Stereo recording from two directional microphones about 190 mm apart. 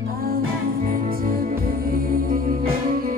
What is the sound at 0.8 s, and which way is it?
Music, 50° right (ahead or behind).